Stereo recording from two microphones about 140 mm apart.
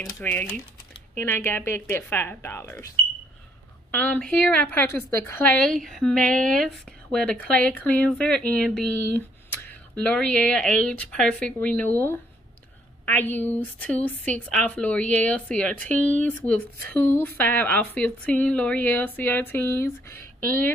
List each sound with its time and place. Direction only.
0.2 s speech: 10° left (ahead or behind)
3.9 s speech: 10° left (ahead or behind)
15.9 s speech: 60° right (ahead or behind)
16.2 s speech: 10° left (ahead or behind)